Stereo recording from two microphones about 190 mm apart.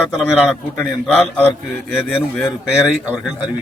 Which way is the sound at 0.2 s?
Centre (ahead or behind).